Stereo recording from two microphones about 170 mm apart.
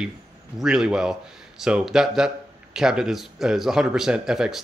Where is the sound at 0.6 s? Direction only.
5° right (ahead or behind).